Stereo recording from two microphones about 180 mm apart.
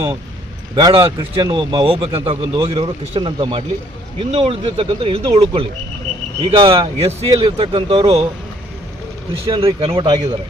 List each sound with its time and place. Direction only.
0.8 s a man's voice: 25° right (ahead or behind)
9.5 s speech: 30° right (ahead or behind)